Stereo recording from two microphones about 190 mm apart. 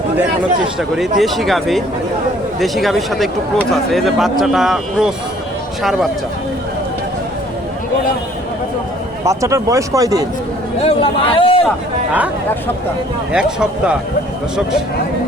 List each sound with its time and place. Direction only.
0.8 s speech: centre (ahead or behind)
9.2 s speech: 15° right (ahead or behind)
10.8 s a man's voice: 30° left (ahead or behind)
13.3 s speech: 5° right (ahead or behind)